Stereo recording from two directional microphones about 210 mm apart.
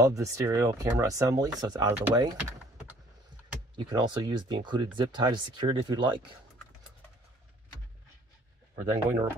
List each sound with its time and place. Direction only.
0.0 s speech: 15° right (ahead or behind)
3.7 s speech: 20° right (ahead or behind)
8.9 s speech: 15° right (ahead or behind)